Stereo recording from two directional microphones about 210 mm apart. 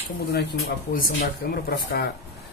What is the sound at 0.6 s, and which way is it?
Speech, 45° left (ahead or behind).